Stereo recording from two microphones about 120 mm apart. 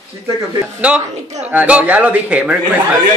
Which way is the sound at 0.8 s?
10° right (ahead or behind).